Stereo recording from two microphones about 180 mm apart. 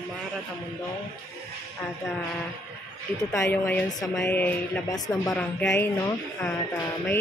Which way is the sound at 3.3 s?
15° left (ahead or behind).